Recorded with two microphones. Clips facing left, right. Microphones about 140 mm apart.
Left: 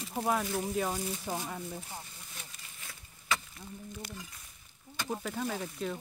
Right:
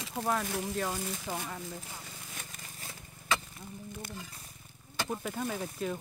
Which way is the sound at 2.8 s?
40° right (ahead or behind).